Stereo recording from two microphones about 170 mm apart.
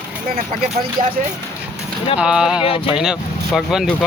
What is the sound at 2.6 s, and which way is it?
Speech, 30° left (ahead or behind).